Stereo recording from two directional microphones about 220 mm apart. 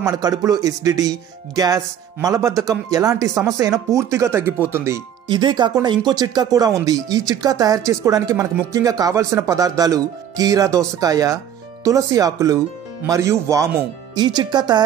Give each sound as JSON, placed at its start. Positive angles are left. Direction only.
{"t": 0.0, "sound": "speech", "side_deg": -15}